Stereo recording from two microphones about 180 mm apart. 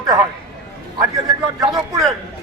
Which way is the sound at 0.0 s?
20° right (ahead or behind).